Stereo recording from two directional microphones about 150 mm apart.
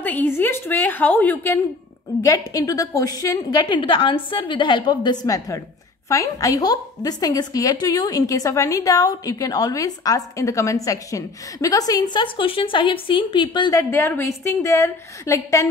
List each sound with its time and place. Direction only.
0.0 s a woman's voice: 10° left (ahead or behind)